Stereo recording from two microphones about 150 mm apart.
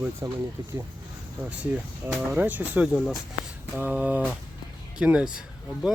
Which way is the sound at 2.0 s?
15° right (ahead or behind).